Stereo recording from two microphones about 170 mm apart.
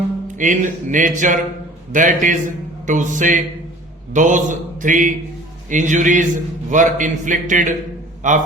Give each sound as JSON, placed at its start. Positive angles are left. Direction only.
{"t": 0.3, "sound": "a man's voice", "side_deg": -50}